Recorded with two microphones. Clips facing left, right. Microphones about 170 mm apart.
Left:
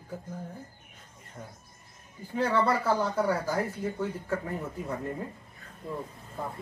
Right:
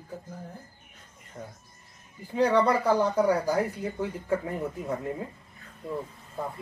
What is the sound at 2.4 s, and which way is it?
Speech, 15° right (ahead or behind).